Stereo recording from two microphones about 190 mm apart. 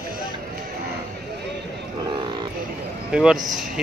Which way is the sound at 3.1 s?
5° right (ahead or behind).